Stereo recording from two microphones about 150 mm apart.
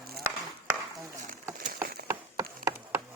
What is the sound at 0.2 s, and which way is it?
Chop, 20° right (ahead or behind).